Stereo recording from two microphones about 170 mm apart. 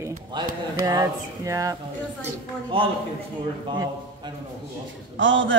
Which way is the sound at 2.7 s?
30° right (ahead or behind).